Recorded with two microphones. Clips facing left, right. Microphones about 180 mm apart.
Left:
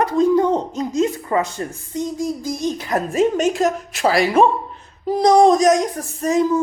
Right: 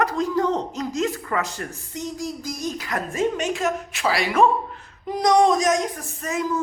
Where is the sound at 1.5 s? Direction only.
25° left (ahead or behind).